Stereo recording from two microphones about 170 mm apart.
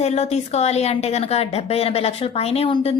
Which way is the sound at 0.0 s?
40° left (ahead or behind).